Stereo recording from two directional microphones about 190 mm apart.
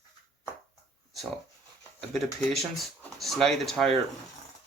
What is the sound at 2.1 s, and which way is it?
Speech, centre (ahead or behind).